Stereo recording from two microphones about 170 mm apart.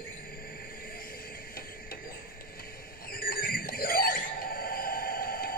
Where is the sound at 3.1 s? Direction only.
60° left (ahead or behind).